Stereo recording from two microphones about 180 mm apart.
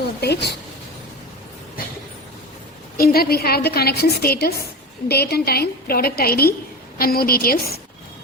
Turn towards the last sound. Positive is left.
turn(degrees=55)  # may be behind; listen again after turning